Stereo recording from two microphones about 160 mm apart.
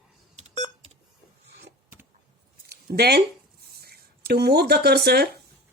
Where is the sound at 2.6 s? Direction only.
90° right.